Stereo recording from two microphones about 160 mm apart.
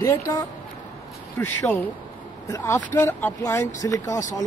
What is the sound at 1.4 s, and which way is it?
Speech, 10° left (ahead or behind).